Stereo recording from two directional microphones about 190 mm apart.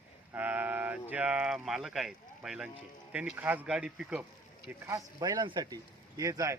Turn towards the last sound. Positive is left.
turn(degrees=-15)  # may be behind; listen again after turning